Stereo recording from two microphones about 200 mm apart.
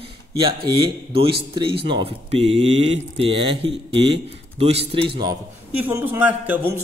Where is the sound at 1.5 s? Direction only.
25° right (ahead or behind).